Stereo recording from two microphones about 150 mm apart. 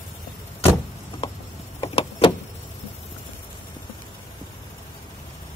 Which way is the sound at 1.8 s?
40° left (ahead or behind).